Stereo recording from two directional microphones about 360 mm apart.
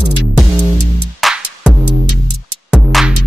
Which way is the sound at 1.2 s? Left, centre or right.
Centre.